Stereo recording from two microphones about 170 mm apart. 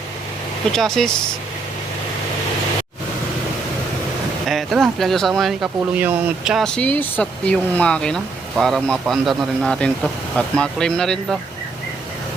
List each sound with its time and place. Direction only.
0.7 s speech: centre (ahead or behind)
4.4 s speech: centre (ahead or behind)